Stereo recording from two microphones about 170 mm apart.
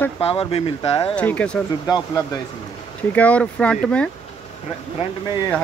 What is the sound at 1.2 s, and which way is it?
Speech, 10° left (ahead or behind).